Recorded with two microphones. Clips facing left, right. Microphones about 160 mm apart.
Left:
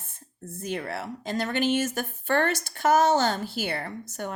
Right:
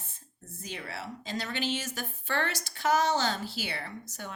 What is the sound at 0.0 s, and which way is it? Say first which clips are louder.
Speech: left 9 dB; 55° left (ahead or behind).